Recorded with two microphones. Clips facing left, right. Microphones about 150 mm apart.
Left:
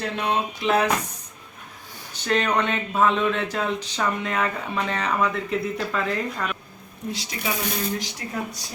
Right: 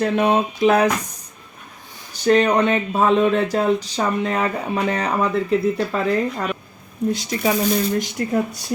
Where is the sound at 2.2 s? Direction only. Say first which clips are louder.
Right 7 dB; 40° right (ahead or behind).